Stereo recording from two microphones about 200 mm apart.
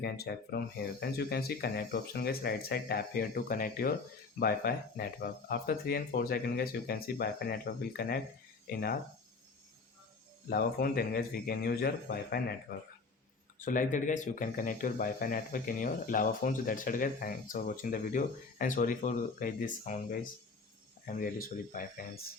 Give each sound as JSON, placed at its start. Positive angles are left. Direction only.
{"t": 0.0, "sound": "speech", "side_deg": 55}
{"t": 10.5, "sound": "speech", "side_deg": 50}
{"t": 13.7, "sound": "speech", "side_deg": 40}